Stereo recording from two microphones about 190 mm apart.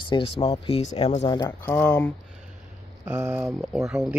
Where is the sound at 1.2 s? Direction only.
20° left (ahead or behind).